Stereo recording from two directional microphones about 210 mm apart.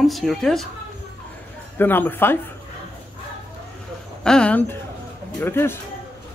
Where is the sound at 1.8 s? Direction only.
10° left (ahead or behind).